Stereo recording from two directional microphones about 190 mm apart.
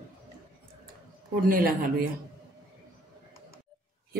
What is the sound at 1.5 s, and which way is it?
Speech, 45° right (ahead or behind).